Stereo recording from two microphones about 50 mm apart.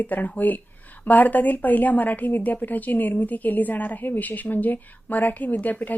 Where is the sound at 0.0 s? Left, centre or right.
Left.